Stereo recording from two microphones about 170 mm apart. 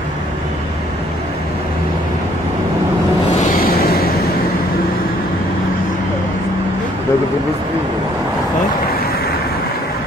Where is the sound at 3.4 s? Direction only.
55° left (ahead or behind).